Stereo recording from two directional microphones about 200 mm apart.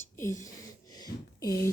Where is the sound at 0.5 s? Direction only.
20° left (ahead or behind).